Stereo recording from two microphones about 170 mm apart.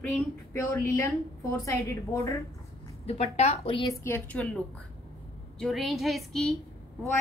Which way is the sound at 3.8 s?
15° left (ahead or behind).